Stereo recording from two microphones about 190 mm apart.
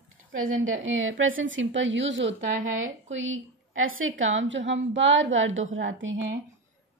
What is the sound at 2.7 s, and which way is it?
A woman's voice, 90° right.